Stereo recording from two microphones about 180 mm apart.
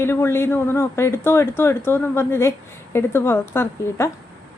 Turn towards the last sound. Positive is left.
turn(degrees=15)  # may be behind; listen again after turning